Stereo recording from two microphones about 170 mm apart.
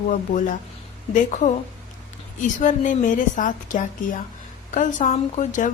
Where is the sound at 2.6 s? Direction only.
45° left (ahead or behind).